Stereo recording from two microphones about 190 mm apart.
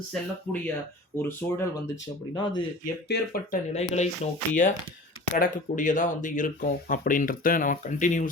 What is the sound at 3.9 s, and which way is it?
Speech, 35° left (ahead or behind).